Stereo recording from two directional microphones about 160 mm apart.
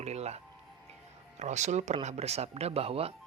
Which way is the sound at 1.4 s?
45° right (ahead or behind).